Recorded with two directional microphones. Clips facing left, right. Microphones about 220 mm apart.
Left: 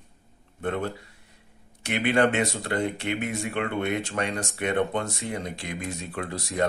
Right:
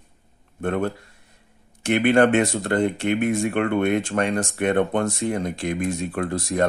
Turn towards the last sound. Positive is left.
turn(degrees=-50)  # may be behind; listen again after turning